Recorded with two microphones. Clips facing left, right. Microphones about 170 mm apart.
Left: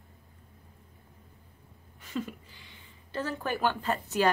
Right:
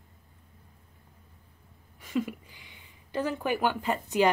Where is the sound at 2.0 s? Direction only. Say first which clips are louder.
Right 5 dB; 10° right (ahead or behind).